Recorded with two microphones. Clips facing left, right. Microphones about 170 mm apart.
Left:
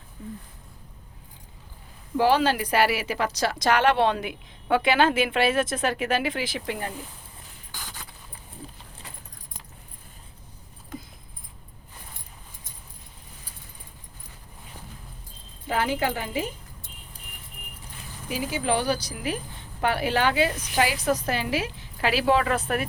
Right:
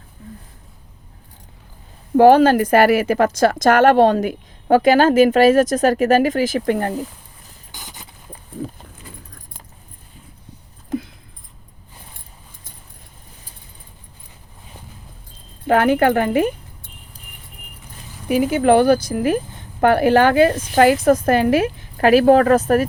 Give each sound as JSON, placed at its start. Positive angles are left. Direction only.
{"t": 2.1, "sound": "a woman's voice", "side_deg": -50}
{"t": 7.7, "sound": "a sound", "side_deg": -20}
{"t": 15.6, "sound": "speech", "side_deg": -60}
{"t": 18.3, "sound": "a woman's voice", "side_deg": -55}